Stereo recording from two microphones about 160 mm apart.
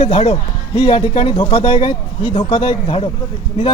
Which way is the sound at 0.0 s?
40° left (ahead or behind).